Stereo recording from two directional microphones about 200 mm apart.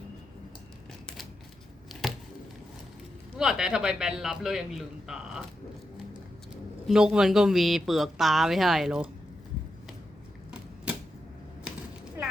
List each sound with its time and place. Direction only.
1.9 s a sound: centre (ahead or behind)
3.3 s speech: centre (ahead or behind)
6.8 s speech: 5° right (ahead or behind)